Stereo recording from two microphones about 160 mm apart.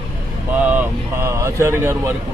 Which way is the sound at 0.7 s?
15° right (ahead or behind).